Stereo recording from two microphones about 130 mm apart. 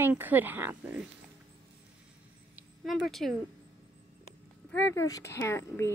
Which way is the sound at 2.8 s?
Centre (ahead or behind).